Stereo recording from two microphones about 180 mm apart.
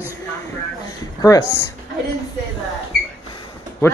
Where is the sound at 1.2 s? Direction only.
20° left (ahead or behind).